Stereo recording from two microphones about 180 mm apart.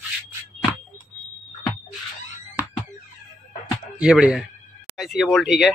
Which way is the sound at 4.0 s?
5° right (ahead or behind).